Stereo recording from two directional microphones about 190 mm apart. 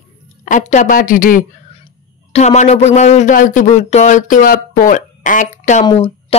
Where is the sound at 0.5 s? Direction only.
40° left (ahead or behind).